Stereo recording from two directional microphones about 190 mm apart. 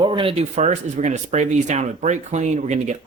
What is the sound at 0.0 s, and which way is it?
Speech, 25° right (ahead or behind).